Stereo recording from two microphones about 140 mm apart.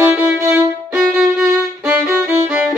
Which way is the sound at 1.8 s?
10° right (ahead or behind).